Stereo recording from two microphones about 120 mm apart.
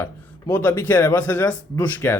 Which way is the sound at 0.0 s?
20° left (ahead or behind).